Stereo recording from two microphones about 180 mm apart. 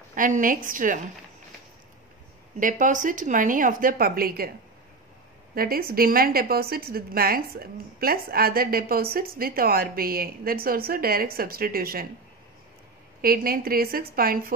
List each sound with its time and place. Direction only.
0.1 s speech: 50° right (ahead or behind)
2.6 s speech: 45° right (ahead or behind)
5.5 s a woman's voice: 55° right (ahead or behind)
13.2 s a woman's voice: 55° right (ahead or behind)